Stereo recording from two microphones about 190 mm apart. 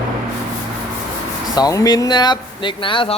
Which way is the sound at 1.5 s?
20° left (ahead or behind).